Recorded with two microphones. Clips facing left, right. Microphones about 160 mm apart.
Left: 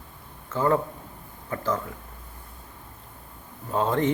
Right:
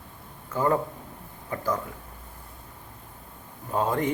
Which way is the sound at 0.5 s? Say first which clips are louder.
Left 1 dB; 15° right (ahead or behind).